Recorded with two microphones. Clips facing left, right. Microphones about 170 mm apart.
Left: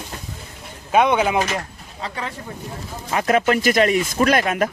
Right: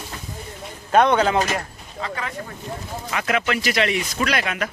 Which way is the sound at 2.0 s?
30° left (ahead or behind).